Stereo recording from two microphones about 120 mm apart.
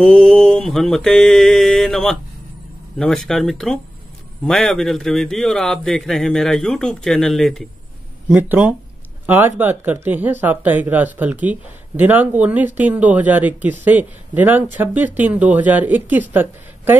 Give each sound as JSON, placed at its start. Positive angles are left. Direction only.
{"t": 0.0, "sound": "speech", "side_deg": 5}
{"t": 8.3, "sound": "speech", "side_deg": -15}